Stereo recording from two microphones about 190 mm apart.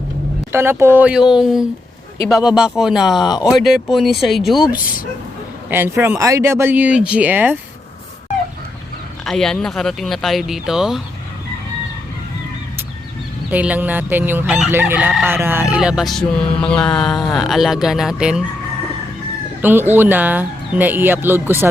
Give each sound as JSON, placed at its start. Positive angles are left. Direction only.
{"t": 0.5, "sound": "speech", "side_deg": -15}
{"t": 2.3, "sound": "crowing", "side_deg": -5}
{"t": 3.2, "sound": "speech", "side_deg": 20}
{"t": 3.5, "sound": "crowing", "side_deg": 0}
{"t": 5.7, "sound": "speech", "side_deg": -10}
{"t": 9.2, "sound": "crowing", "side_deg": 5}
{"t": 13.5, "sound": "crowing", "side_deg": -10}
{"t": 19.6, "sound": "speech", "side_deg": -10}